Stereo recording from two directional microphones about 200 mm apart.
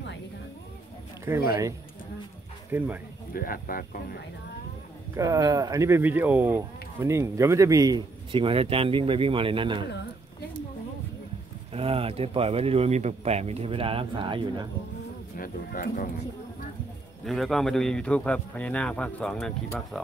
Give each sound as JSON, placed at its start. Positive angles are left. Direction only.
{"t": 2.7, "sound": "speech", "side_deg": -10}
{"t": 3.3, "sound": "speech", "side_deg": 45}
{"t": 5.1, "sound": "speech", "side_deg": -15}
{"t": 11.7, "sound": "speech", "side_deg": -30}
{"t": 15.3, "sound": "speech", "side_deg": 45}
{"t": 17.2, "sound": "a man's voice", "side_deg": 0}